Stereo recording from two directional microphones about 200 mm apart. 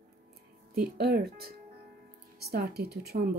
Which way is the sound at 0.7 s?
50° right (ahead or behind).